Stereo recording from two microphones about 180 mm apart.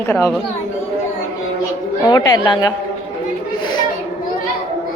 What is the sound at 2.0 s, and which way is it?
Speech, 20° left (ahead or behind).